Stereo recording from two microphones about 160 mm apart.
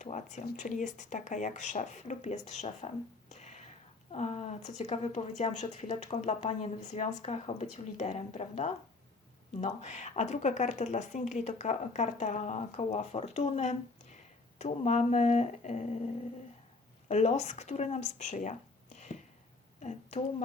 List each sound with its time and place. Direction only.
0.0 s speech: 45° left (ahead or behind)
17.1 s speech: 45° left (ahead or behind)
18.9 s a sound: 45° left (ahead or behind)
19.8 s speech: 45° left (ahead or behind)